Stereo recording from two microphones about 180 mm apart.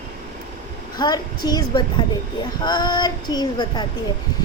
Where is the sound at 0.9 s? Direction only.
20° left (ahead or behind).